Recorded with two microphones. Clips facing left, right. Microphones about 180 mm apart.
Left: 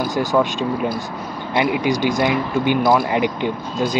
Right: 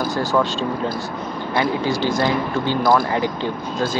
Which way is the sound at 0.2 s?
15° left (ahead or behind).